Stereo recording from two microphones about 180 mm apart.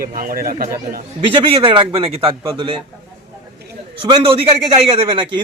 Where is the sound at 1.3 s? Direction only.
30° right (ahead or behind).